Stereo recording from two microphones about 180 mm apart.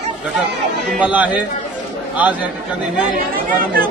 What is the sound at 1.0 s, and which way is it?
Speech, 10° right (ahead or behind).